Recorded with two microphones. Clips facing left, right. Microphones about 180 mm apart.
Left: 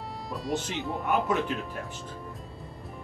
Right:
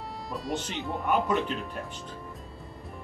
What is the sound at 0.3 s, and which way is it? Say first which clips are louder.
Speech: left 2 dB; centre (ahead or behind).